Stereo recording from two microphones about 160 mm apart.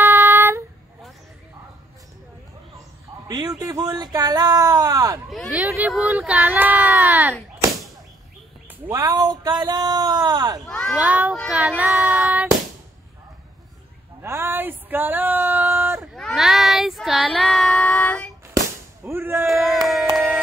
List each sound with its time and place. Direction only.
0.0 s child singing: 15° right (ahead or behind)
3.3 s speech: 25° right (ahead or behind)
5.3 s speech: centre (ahead or behind)
8.6 s speech: 10° right (ahead or behind)
9.1 s speech: 25° right (ahead or behind)
10.7 s children playing: 5° left (ahead or behind)
11.0 s speech: 10° right (ahead or behind)
11.5 s child singing: 10° right (ahead or behind)
14.2 s a sound: 15° right (ahead or behind)
16.2 s child singing: centre (ahead or behind)
19.0 s a sound: 15° right (ahead or behind)
19.4 s a sound: centre (ahead or behind)